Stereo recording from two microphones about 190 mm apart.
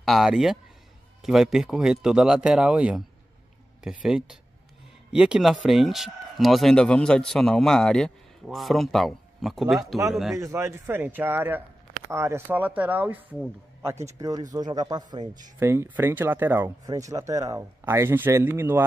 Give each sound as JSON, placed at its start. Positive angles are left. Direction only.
{"t": 0.0, "sound": "speech", "side_deg": 0}
{"t": 4.0, "sound": "speech", "side_deg": -5}
{"t": 10.3, "sound": "speech", "side_deg": -15}